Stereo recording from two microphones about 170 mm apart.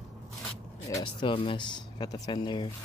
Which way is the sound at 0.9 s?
30° left (ahead or behind).